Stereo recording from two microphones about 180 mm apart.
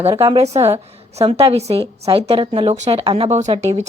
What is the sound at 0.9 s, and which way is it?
A woman's voice, 35° right (ahead or behind).